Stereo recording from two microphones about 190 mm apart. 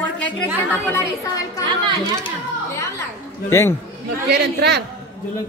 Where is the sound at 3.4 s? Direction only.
15° left (ahead or behind).